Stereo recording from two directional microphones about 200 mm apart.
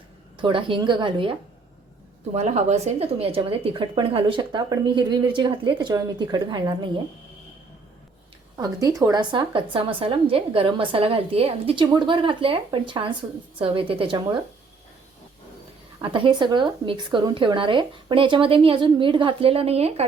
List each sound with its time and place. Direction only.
0.4 s speech: 25° right (ahead or behind)
8.5 s speech: 15° right (ahead or behind)
16.0 s speech: 25° right (ahead or behind)